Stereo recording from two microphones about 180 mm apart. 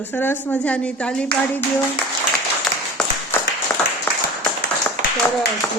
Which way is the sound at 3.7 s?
10° left (ahead or behind).